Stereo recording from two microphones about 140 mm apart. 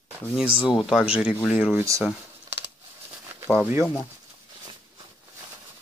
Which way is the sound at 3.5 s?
10° right (ahead or behind).